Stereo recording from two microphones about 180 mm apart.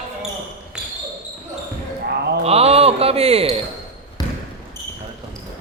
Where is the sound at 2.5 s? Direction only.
35° right (ahead or behind).